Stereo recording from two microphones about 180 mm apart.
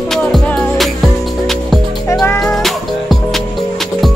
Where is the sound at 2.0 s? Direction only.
15° left (ahead or behind).